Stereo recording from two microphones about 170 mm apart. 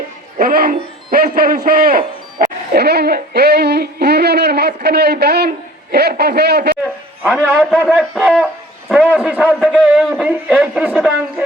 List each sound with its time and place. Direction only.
0.3 s a man's voice: 60° right (ahead or behind)
6.8 s a man's voice: 10° right (ahead or behind)